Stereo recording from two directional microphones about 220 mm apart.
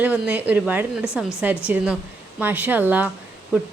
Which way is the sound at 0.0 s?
5° right (ahead or behind).